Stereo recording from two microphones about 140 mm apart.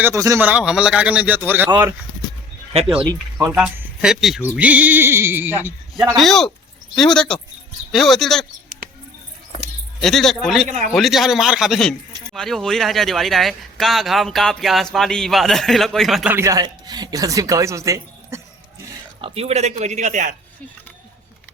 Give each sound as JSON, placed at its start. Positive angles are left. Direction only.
{"t": 0.0, "sound": "speech", "side_deg": -20}
{"t": 0.3, "sound": "a man's voice", "side_deg": -10}
{"t": 3.3, "sound": "speech", "side_deg": -10}
{"t": 6.1, "sound": "speech", "side_deg": 0}
{"t": 10.0, "sound": "speech", "side_deg": 0}
{"t": 10.7, "sound": "a man's voice", "side_deg": -55}
{"t": 10.9, "sound": "speech", "side_deg": 0}
{"t": 16.3, "sound": "speech", "side_deg": -20}
{"t": 19.2, "sound": "speech", "side_deg": -45}